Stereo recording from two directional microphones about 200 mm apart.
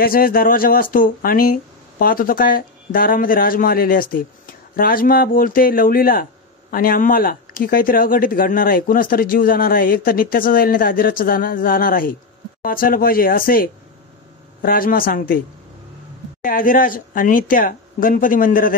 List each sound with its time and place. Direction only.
0.0 s speech: 45° left (ahead or behind)
16.4 s speech: 45° left (ahead or behind)